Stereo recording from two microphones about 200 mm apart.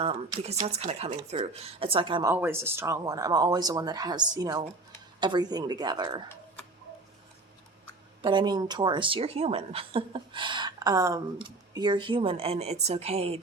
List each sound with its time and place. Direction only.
0.0 s a woman's voice: 30° right (ahead or behind)
2.3 s a woman's voice: 10° right (ahead or behind)
8.2 s a woman's voice: 25° right (ahead or behind)